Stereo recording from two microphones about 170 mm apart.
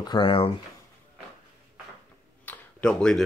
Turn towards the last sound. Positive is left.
turn(degrees=5)  # may be behind; listen again after turning